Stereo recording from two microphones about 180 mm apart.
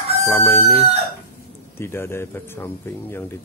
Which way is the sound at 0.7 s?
35° right (ahead or behind).